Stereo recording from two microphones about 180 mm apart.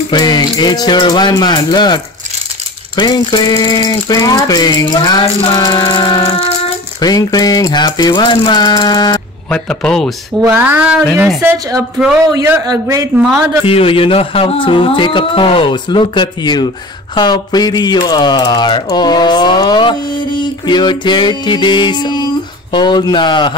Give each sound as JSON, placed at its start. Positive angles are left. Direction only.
{"t": 0.1, "sound": "speech", "side_deg": 20}
{"t": 3.0, "sound": "speech", "side_deg": 25}
{"t": 9.5, "sound": "a man's voice", "side_deg": 5}
{"t": 10.4, "sound": "a man's voice", "side_deg": -10}
{"t": 11.4, "sound": "a woman's voice", "side_deg": -20}
{"t": 13.7, "sound": "speech", "side_deg": 30}